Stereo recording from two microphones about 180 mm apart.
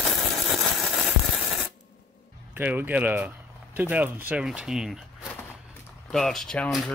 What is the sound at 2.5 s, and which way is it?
Speech, 10° right (ahead or behind).